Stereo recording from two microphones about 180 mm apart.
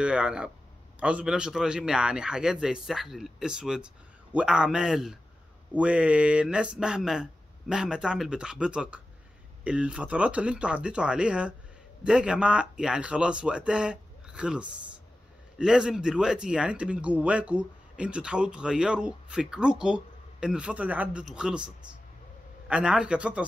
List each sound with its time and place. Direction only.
0.0 s speech: 5° right (ahead or behind)